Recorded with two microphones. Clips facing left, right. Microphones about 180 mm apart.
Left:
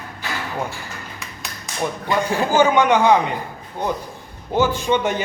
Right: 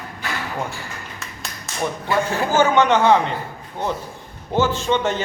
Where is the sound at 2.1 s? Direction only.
15° left (ahead or behind).